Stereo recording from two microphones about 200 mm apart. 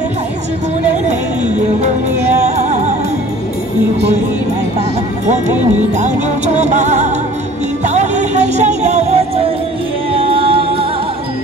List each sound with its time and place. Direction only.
2.5 s music: 35° right (ahead or behind)
5.9 s music: 35° right (ahead or behind)